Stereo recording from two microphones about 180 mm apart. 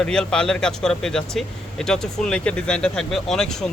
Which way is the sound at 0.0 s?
5° left (ahead or behind).